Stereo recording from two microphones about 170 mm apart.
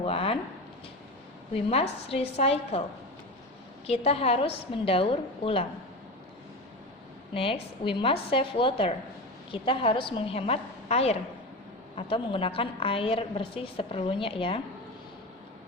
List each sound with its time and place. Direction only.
0.0 s speech: 35° left (ahead or behind)
1.5 s a woman's voice: 35° left (ahead or behind)
3.8 s a woman's voice: 35° left (ahead or behind)
7.3 s a woman's voice: 35° left (ahead or behind)